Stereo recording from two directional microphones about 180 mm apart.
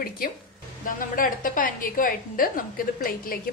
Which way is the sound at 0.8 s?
50° left (ahead or behind).